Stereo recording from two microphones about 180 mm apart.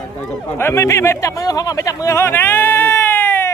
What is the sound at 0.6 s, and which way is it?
Speech, 15° left (ahead or behind).